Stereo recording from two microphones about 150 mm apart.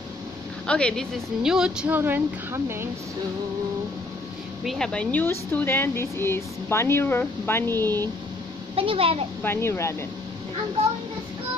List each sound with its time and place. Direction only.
0.7 s speech: 5° left (ahead or behind)
1.4 s speech: 5° right (ahead or behind)
4.6 s speech: 5° left (ahead or behind)
8.7 s a child's voice: 40° right (ahead or behind)
9.4 s speech: 15° left (ahead or behind)